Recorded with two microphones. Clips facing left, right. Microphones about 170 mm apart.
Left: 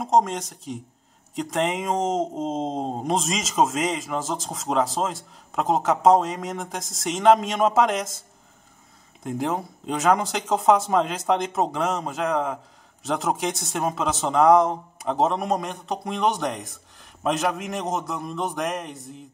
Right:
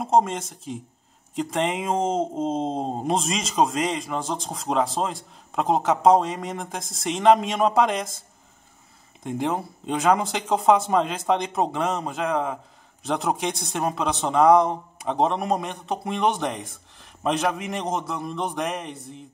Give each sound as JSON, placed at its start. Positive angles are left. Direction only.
{"t": 0.0, "sound": "speech", "side_deg": 0}
{"t": 9.2, "sound": "speech", "side_deg": 0}